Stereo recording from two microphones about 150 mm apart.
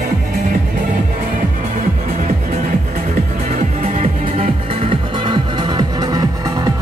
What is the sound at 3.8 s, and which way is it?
Music, 45° right (ahead or behind).